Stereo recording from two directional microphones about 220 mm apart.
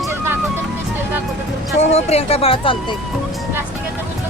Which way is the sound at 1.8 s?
30° left (ahead or behind).